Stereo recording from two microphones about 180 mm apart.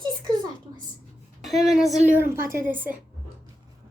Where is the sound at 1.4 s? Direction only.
Centre (ahead or behind).